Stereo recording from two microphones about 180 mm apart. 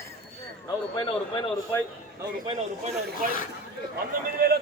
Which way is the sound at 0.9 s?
25° left (ahead or behind).